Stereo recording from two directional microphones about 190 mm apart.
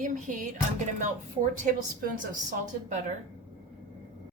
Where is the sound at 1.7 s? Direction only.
45° right (ahead or behind).